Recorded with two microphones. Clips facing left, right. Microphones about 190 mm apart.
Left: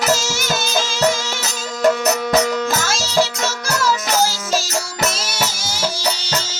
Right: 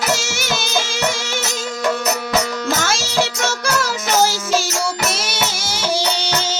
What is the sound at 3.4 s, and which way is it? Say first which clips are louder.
Music: even; 60° right (ahead or behind).